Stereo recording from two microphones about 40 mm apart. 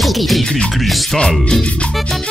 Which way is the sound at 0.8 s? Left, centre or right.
Centre.